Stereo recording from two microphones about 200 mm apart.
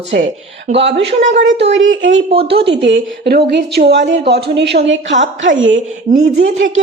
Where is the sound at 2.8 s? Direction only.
60° right (ahead or behind).